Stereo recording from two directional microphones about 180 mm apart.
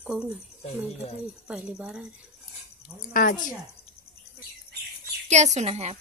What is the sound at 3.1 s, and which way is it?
Speech, 50° left (ahead or behind).